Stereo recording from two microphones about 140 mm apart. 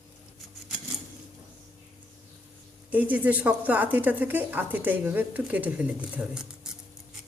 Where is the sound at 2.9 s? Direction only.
10° right (ahead or behind).